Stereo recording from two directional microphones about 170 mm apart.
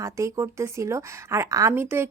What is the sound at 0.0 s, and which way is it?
A woman's voice, 15° right (ahead or behind).